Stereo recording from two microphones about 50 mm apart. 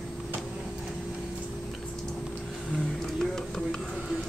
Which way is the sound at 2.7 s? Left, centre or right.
Centre.